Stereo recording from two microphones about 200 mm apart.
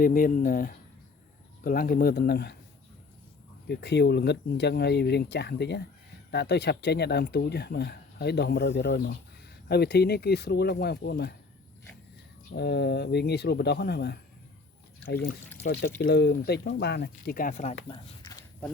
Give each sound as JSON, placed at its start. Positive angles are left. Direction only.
{"t": 0.0, "sound": "speech", "side_deg": 45}
{"t": 3.7, "sound": "speech", "side_deg": 55}
{"t": 12.5, "sound": "speech", "side_deg": 55}
{"t": 15.6, "sound": "speech", "side_deg": 55}
{"t": 17.8, "sound": "speech", "side_deg": 25}